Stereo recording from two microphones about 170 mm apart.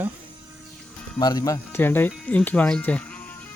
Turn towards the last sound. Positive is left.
turn(degrees=10)  # may be behind; listen again after turning